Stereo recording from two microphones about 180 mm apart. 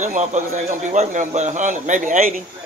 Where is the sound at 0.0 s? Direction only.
40° right (ahead or behind).